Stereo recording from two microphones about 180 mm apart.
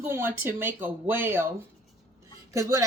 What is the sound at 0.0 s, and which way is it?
A woman's voice, 15° right (ahead or behind).